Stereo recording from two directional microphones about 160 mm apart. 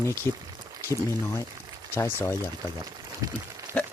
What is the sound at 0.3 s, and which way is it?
Speech, 20° right (ahead or behind).